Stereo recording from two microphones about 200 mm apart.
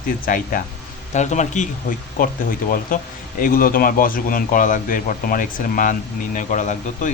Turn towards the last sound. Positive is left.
turn(degrees=40)  # may be behind; listen again after turning